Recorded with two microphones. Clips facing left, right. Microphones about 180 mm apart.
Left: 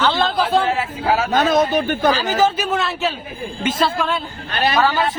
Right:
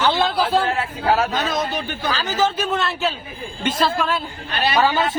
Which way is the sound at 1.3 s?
50° left (ahead or behind).